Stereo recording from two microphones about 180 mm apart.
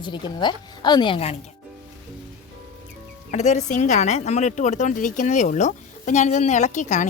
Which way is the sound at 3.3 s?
40° left (ahead or behind).